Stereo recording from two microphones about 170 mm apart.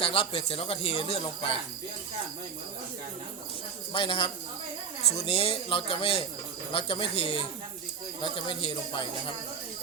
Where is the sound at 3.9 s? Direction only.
30° left (ahead or behind).